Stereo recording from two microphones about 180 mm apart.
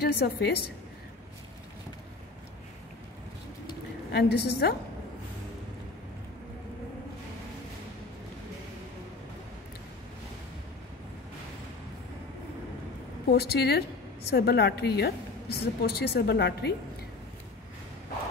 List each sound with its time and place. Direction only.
0.0 s a woman's voice: 65° left (ahead or behind)
4.1 s a woman's voice: 65° left (ahead or behind)
13.3 s a woman's voice: 60° left (ahead or behind)